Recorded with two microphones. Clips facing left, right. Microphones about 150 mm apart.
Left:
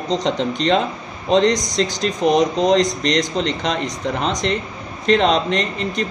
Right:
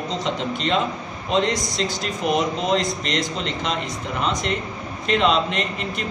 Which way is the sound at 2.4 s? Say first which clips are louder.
Left 7 dB; 40° left (ahead or behind).